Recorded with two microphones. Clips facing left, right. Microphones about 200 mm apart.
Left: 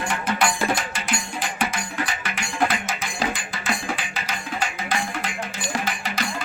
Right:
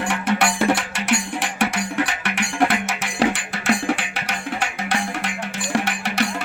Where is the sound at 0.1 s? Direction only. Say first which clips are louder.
Right 3 dB; 75° right (ahead or behind).